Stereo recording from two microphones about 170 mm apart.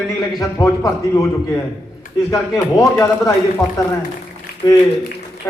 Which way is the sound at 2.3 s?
20° left (ahead or behind).